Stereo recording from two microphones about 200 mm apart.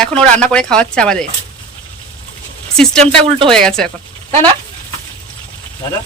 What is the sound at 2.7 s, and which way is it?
Speech, 5° left (ahead or behind).